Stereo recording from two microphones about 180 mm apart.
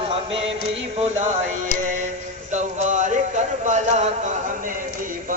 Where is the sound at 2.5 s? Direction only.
45° right (ahead or behind).